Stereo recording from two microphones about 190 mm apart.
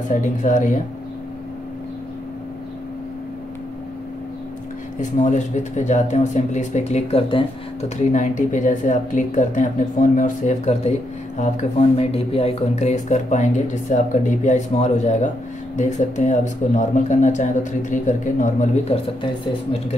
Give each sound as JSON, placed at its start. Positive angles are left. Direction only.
{"t": 0.1, "sound": "speech", "side_deg": 40}
{"t": 5.2, "sound": "speech", "side_deg": 40}
{"t": 8.1, "sound": "speech", "side_deg": 40}